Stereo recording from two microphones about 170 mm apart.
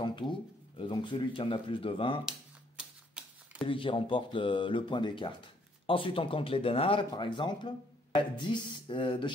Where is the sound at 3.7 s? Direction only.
30° left (ahead or behind).